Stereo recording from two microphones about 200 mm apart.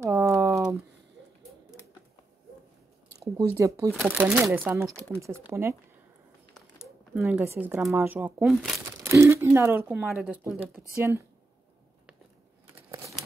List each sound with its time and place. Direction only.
0.0 s a sound: 15° right (ahead or behind)
3.1 s speech: 20° right (ahead or behind)
7.2 s speech: 10° right (ahead or behind)